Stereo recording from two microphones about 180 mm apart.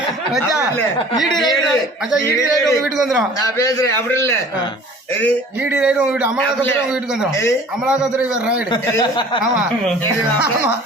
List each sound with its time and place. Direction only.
2.6 s a man's voice: centre (ahead or behind)
3.4 s a man's voice: 20° left (ahead or behind)
5.6 s a man's voice: 10° right (ahead or behind)
6.4 s a man's voice: 10° left (ahead or behind)
7.9 s a man's voice: 5° right (ahead or behind)
8.7 s speech: 25° left (ahead or behind)